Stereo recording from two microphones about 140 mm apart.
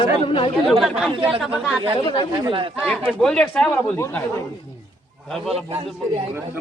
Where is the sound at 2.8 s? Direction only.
Centre (ahead or behind).